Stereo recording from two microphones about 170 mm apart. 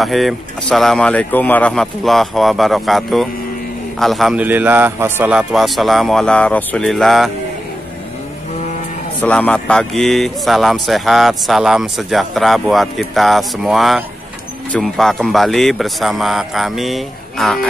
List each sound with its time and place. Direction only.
0.0 s speech: centre (ahead or behind)
9.2 s speech: 10° left (ahead or behind)